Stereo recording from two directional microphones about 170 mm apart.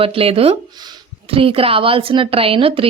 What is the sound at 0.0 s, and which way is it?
A woman's voice, 35° right (ahead or behind).